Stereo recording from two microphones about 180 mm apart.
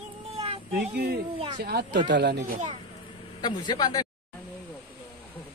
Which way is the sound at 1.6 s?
60° right (ahead or behind).